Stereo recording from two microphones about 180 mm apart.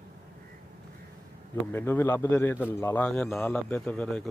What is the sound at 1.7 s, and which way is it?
Speech, 10° left (ahead or behind).